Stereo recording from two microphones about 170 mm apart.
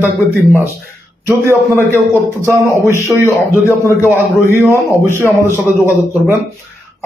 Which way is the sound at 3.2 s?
15° left (ahead or behind).